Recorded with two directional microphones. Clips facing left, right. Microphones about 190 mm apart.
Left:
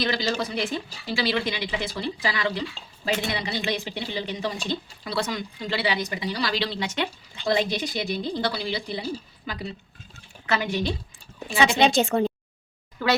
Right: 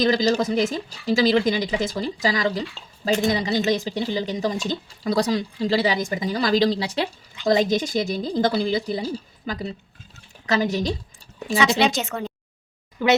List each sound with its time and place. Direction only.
0.0 s a woman's voice: 40° right (ahead or behind)
11.8 s speech: 30° left (ahead or behind)
13.0 s speech: 20° right (ahead or behind)